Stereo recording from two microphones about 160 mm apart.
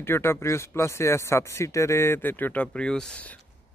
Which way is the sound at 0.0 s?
15° left (ahead or behind).